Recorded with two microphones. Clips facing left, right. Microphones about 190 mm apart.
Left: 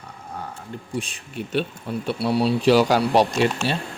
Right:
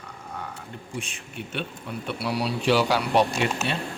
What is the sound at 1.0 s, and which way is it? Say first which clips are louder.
Speech: left 6 dB; 35° left (ahead or behind).